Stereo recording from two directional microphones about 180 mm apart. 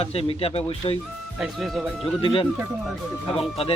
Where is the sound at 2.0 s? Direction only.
30° left (ahead or behind).